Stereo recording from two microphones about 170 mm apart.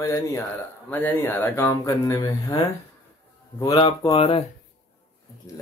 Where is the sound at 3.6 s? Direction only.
25° left (ahead or behind).